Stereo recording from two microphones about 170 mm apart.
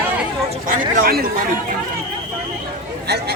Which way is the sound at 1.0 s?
60° right (ahead or behind).